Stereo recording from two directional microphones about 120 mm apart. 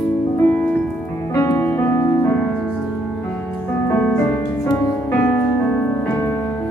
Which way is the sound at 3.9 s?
15° left (ahead or behind).